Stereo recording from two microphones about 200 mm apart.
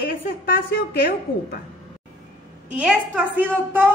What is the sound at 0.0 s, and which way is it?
A woman's voice, 50° left (ahead or behind).